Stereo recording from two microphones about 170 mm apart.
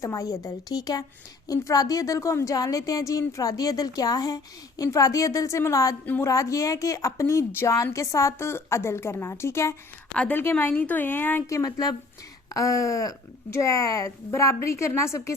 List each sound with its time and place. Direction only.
0.0 s a woman's voice: 20° left (ahead or behind)